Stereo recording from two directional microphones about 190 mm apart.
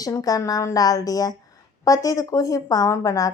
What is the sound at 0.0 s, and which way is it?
A woman's voice, 20° left (ahead or behind).